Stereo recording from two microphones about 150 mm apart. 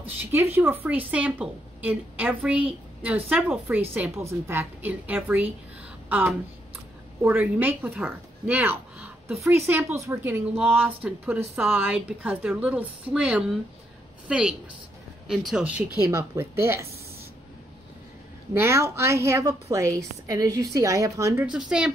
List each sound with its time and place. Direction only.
0.2 s a woman's voice: 15° right (ahead or behind)
6.0 s a sound: 10° right (ahead or behind)
7.2 s a woman's voice: 10° right (ahead or behind)
16.1 s a woman's voice: 15° right (ahead or behind)
18.5 s a woman's voice: 20° right (ahead or behind)
21.5 s speech: 5° right (ahead or behind)